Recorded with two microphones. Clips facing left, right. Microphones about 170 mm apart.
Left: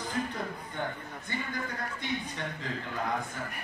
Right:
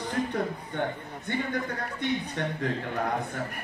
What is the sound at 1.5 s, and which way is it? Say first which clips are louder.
A man's voice: right 5 dB; 65° right (ahead or behind).